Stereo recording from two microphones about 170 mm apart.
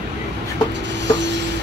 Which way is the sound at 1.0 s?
90° right.